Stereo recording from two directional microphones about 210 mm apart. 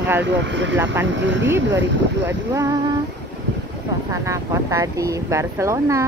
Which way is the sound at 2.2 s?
15° right (ahead or behind).